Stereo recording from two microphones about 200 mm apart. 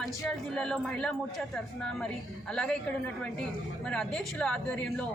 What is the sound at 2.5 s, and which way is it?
Speech, 5° left (ahead or behind).